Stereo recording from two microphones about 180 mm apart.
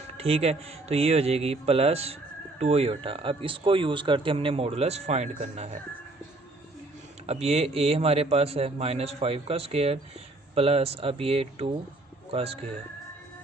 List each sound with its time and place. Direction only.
0.2 s speech: 35° right (ahead or behind)
7.3 s speech: 35° right (ahead or behind)